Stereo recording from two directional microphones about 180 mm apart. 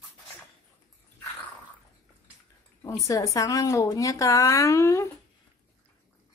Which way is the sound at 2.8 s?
20° left (ahead or behind).